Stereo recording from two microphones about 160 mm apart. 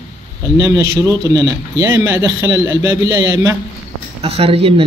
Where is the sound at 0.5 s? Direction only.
20° right (ahead or behind).